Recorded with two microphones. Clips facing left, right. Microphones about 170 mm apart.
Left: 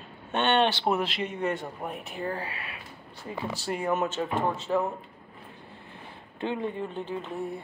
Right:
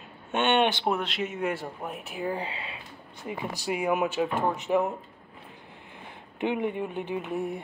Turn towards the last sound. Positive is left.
turn(degrees=-15)  # may be behind; listen again after turning